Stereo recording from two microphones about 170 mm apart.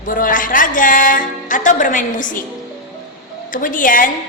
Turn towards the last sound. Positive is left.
turn(degrees=55)  # may be behind; listen again after turning